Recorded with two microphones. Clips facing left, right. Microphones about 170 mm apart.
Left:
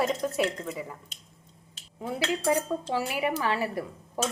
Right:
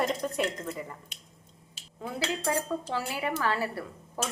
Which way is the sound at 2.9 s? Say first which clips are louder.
Left 5 dB; 15° left (ahead or behind).